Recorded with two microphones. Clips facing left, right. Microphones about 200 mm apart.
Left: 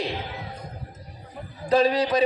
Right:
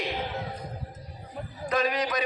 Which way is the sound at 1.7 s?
30° left (ahead or behind).